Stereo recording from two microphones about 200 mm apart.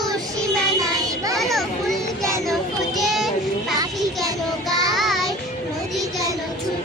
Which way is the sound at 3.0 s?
Centre (ahead or behind).